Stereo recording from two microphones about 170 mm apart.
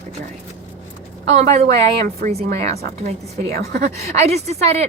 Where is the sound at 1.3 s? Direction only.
40° right (ahead or behind).